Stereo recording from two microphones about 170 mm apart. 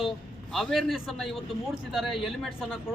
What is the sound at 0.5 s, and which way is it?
A man's voice, centre (ahead or behind).